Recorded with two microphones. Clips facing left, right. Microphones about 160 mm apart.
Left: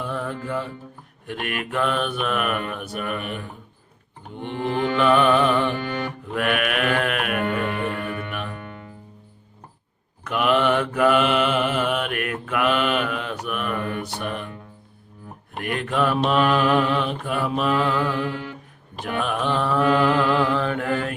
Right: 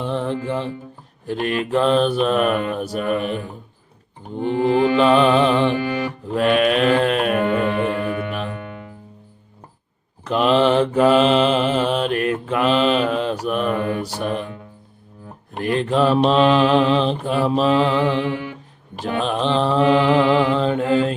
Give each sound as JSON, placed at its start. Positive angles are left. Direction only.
{"t": 0.0, "sound": "mantra", "side_deg": -25}
{"t": 10.2, "sound": "mantra", "side_deg": -30}
{"t": 15.5, "sound": "mantra", "side_deg": -30}
{"t": 18.1, "sound": "music", "side_deg": -75}
{"t": 19.0, "sound": "mantra", "side_deg": -25}